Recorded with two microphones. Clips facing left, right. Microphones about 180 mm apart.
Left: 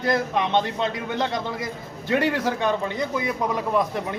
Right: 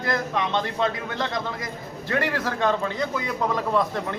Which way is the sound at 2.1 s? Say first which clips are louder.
Left 4 dB; 20° left (ahead or behind).